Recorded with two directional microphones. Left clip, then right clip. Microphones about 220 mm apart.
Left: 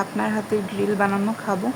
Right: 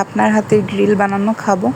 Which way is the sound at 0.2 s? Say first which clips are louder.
Right 14 dB; 20° right (ahead or behind).